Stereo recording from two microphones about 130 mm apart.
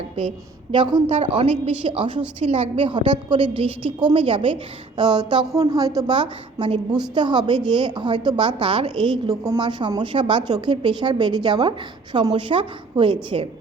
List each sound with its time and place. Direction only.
0.7 s a woman's voice: 35° right (ahead or behind)